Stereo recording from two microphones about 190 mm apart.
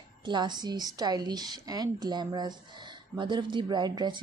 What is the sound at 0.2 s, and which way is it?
A woman's voice, 25° right (ahead or behind).